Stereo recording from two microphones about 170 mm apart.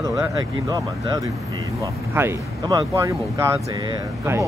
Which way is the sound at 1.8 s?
15° right (ahead or behind).